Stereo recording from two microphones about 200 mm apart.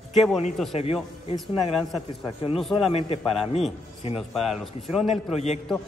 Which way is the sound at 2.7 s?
30° left (ahead or behind).